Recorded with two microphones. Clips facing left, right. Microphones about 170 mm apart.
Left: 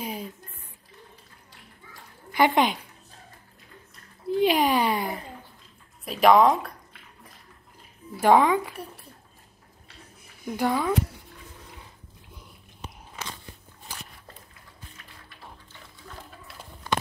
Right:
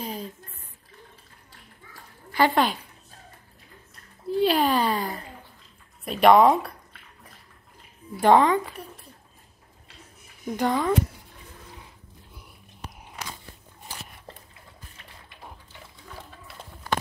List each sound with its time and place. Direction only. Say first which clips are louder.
0.0 s a sound: even; 10° left (ahead or behind)
2.3 s a woman's voice: even; 15° left (ahead or behind)
4.4 s a sound: even; 15° left (ahead or behind)
6.0 s speech: right 1 dB; centre (ahead or behind)
8.2 s a woman's voice: right 1 dB; 10° left (ahead or behind)
10.5 s a woman's voice: right 1 dB; 5° left (ahead or behind)